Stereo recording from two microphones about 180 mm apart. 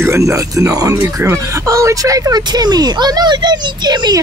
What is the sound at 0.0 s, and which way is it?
Speech, 15° right (ahead or behind).